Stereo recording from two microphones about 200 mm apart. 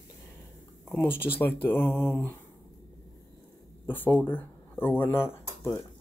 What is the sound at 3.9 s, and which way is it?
Speech, 10° left (ahead or behind).